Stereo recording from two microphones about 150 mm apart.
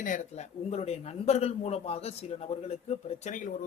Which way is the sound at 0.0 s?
55° left (ahead or behind).